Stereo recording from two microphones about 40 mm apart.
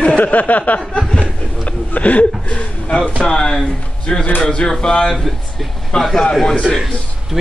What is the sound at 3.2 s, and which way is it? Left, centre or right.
Speech, centre.